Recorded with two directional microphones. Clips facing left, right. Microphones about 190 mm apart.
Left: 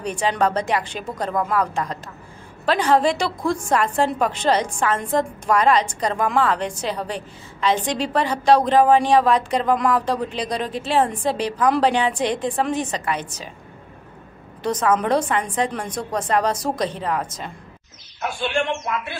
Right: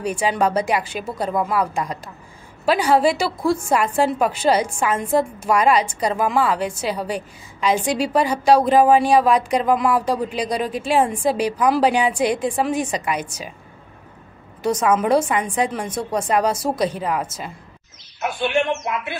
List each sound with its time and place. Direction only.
0.0 s a woman's voice: 10° right (ahead or behind)
14.6 s a woman's voice: 10° right (ahead or behind)
18.5 s speech: 20° right (ahead or behind)